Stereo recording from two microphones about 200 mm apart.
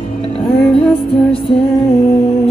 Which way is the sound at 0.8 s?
Centre (ahead or behind).